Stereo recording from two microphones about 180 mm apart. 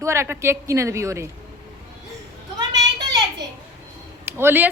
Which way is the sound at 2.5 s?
25° right (ahead or behind).